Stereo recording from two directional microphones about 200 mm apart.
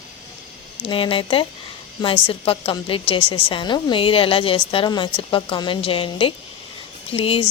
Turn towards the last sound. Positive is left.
turn(degrees=25)  # may be behind; listen again after turning